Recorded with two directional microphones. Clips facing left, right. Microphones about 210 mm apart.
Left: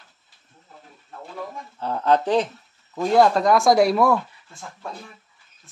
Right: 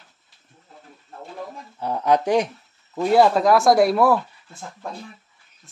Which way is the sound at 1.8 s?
15° right (ahead or behind).